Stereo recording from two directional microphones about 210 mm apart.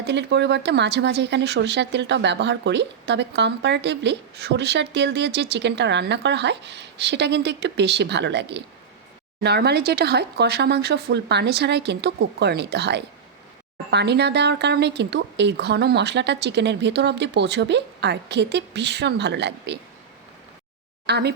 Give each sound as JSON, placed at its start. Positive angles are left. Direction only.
{"t": 0.0, "sound": "a woman's voice", "side_deg": -55}
{"t": 21.1, "sound": "speech", "side_deg": -50}